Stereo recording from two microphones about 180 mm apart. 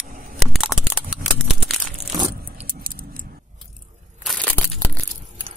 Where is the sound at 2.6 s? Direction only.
50° right (ahead or behind).